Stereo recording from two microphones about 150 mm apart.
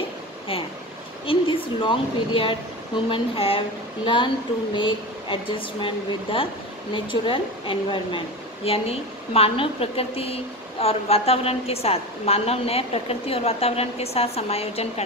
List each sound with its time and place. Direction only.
1.2 s a woman's voice: 35° left (ahead or behind)